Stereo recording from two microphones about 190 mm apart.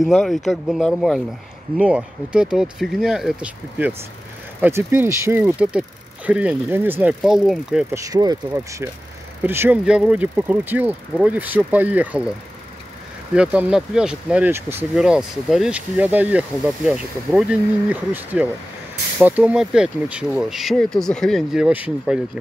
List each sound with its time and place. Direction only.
0.0 s speech: centre (ahead or behind)
7.9 s speech: 20° right (ahead or behind)
13.3 s speech: 5° right (ahead or behind)